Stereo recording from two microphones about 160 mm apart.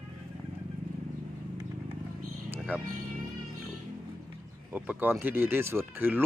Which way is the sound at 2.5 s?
10° right (ahead or behind).